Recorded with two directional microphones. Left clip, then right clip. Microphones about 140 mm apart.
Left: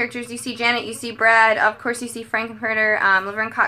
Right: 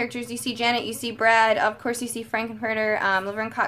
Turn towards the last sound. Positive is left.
turn(degrees=-40)  # may be behind; listen again after turning